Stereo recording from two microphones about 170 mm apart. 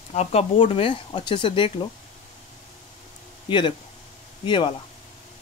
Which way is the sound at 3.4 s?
30° left (ahead or behind).